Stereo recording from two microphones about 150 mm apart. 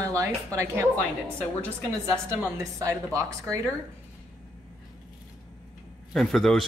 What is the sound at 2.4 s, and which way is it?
A woman's voice, 20° right (ahead or behind).